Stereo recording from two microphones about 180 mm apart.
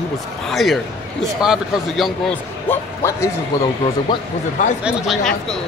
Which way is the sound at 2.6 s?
15° left (ahead or behind).